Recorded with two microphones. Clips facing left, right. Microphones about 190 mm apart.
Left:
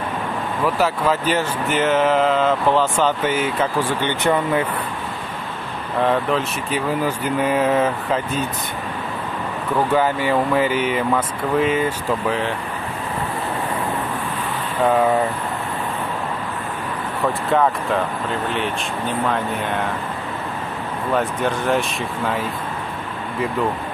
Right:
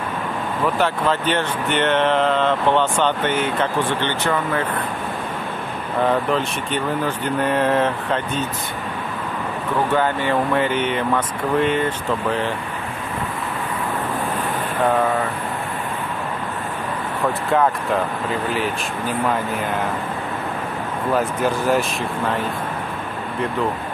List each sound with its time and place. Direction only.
0.7 s speech: 5° left (ahead or behind)
5.9 s speech: centre (ahead or behind)
9.9 s speech: 5° left (ahead or behind)
17.2 s speech: centre (ahead or behind)
21.1 s speech: 5° right (ahead or behind)